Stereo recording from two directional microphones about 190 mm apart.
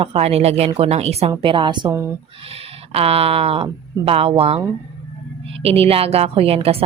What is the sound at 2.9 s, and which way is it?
A woman's voice, 30° right (ahead or behind).